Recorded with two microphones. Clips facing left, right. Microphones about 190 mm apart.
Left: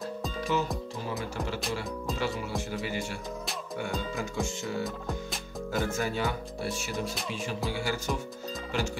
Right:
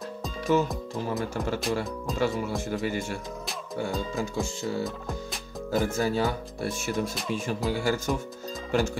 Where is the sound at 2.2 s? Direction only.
45° right (ahead or behind).